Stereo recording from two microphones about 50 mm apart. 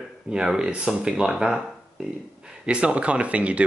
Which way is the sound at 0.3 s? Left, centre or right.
Centre.